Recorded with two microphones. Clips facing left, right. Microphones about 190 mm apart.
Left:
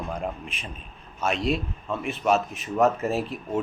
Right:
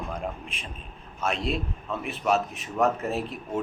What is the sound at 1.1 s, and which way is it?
Speech, centre (ahead or behind).